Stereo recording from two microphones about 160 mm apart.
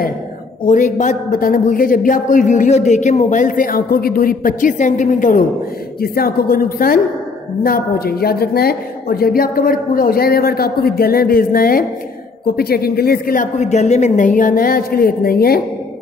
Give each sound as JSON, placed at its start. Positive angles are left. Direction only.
{"t": 0.7, "sound": "speech", "side_deg": 50}
{"t": 5.9, "sound": "a woman's voice", "side_deg": 70}